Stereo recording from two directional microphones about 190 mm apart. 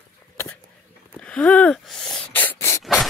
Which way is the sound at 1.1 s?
5° left (ahead or behind).